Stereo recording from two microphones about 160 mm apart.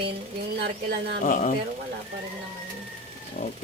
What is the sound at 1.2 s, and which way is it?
Speech, 50° left (ahead or behind).